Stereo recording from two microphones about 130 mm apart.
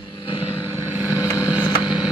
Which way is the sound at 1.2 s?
25° left (ahead or behind).